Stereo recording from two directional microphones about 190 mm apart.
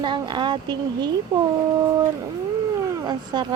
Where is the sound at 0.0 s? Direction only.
25° right (ahead or behind).